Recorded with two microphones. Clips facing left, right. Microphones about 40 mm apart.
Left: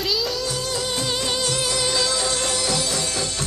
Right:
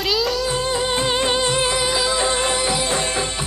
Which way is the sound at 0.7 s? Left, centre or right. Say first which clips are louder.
Right 5 dB; right.